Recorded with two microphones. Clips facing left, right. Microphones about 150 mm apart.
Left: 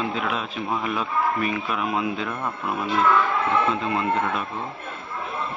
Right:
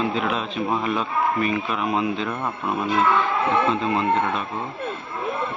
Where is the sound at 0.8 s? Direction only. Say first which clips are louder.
Right 2 dB; 5° left (ahead or behind).